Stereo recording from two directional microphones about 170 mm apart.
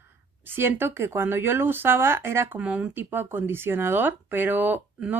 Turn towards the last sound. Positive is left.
turn(degrees=-10)  # may be behind; listen again after turning